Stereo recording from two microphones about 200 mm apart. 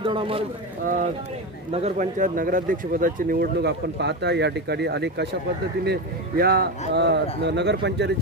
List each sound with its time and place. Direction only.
0.0 s speech: 25° right (ahead or behind)
1.7 s speech: 30° right (ahead or behind); by 8.1 s 60° right (ahead or behind)